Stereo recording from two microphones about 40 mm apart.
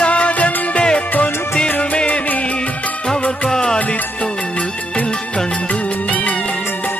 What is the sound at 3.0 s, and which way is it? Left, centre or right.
Music, centre.